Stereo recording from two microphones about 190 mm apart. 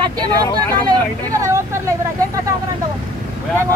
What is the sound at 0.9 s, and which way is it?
Speech, 15° right (ahead or behind).